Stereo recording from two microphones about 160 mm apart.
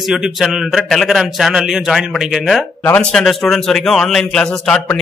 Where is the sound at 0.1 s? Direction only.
Centre (ahead or behind).